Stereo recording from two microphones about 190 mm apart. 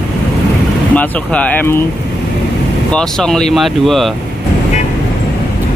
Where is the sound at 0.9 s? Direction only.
10° left (ahead or behind).